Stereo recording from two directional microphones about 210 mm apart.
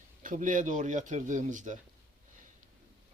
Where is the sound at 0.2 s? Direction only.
40° right (ahead or behind).